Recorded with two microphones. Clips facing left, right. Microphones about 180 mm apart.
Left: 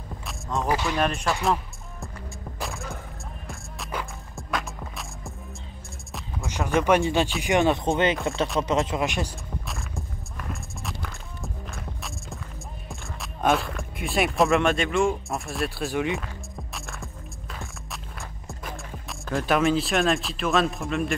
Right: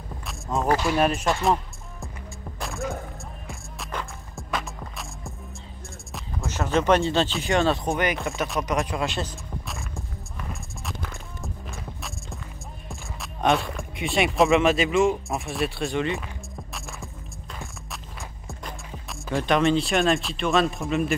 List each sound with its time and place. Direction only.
0.3 s music: 5° right (ahead or behind)
0.8 s speech: 10° right (ahead or behind)
1.4 s music: centre (ahead or behind)
3.4 s music: centre (ahead or behind)
6.4 s speech: 15° left (ahead or behind)
9.7 s music: centre (ahead or behind)
12.8 s speech: centre (ahead or behind)
16.7 s music: centre (ahead or behind)
18.5 s speech: centre (ahead or behind)